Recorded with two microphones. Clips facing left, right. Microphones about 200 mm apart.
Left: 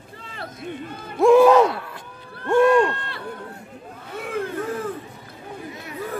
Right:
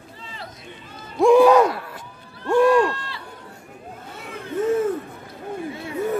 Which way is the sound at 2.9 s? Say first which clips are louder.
Left 2 dB; 55° left (ahead or behind).